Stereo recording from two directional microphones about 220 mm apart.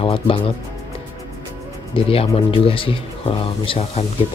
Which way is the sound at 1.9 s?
25° left (ahead or behind).